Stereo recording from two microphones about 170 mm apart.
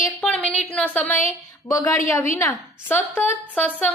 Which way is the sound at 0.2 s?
5° left (ahead or behind).